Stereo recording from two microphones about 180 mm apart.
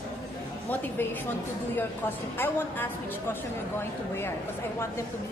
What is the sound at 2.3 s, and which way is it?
Speech, 10° left (ahead or behind).